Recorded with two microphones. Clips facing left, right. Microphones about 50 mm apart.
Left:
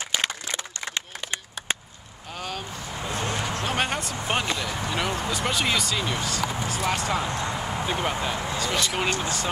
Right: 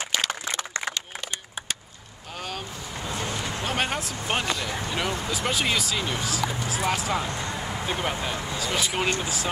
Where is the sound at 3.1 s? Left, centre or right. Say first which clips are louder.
Left 3 dB; left.